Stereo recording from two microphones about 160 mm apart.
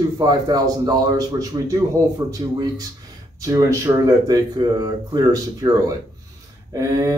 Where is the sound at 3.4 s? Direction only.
20° right (ahead or behind).